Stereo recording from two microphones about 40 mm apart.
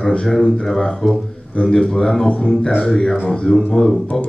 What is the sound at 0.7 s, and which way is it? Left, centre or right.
Speech, centre.